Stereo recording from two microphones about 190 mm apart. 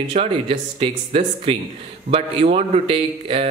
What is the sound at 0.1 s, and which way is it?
Speech, 30° right (ahead or behind).